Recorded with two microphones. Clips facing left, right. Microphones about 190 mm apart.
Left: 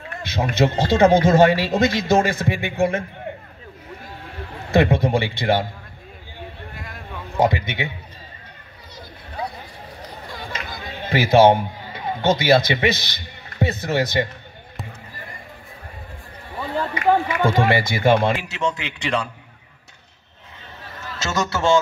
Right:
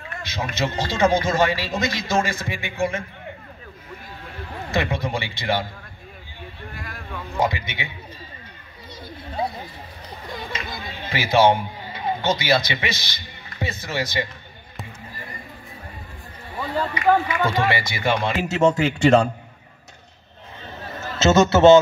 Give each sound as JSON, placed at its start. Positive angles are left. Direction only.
{"t": 0.2, "sound": "speech", "side_deg": 60}
{"t": 4.6, "sound": "speech", "side_deg": 55}
{"t": 6.7, "sound": "a sound", "side_deg": 20}
{"t": 7.3, "sound": "speech", "side_deg": 55}
{"t": 9.4, "sound": "a sound", "side_deg": -25}
{"t": 10.5, "sound": "a sound", "side_deg": 55}
{"t": 17.5, "sound": "speech", "side_deg": 50}
{"t": 18.4, "sound": "speech", "side_deg": -45}
{"t": 21.2, "sound": "a man's voice", "side_deg": -25}